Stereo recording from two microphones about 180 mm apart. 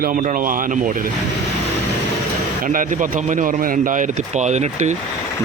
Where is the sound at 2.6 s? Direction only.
50° right (ahead or behind).